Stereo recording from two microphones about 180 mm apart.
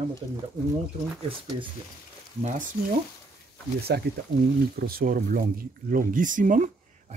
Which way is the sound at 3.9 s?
65° right (ahead or behind).